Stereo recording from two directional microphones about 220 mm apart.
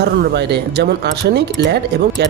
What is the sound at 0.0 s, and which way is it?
Speech, 50° right (ahead or behind).